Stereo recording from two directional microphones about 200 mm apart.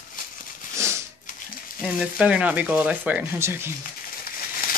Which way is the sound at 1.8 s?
5° right (ahead or behind).